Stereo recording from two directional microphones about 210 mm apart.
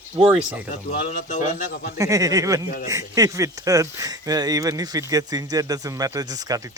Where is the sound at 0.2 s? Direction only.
25° right (ahead or behind).